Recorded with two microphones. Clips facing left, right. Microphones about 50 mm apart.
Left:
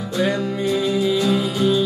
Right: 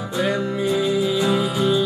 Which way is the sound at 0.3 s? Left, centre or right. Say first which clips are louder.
Even; centre.